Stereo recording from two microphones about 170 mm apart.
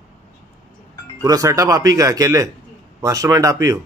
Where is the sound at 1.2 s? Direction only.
20° right (ahead or behind).